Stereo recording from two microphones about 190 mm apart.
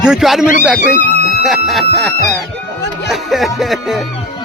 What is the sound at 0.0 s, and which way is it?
Music, centre (ahead or behind).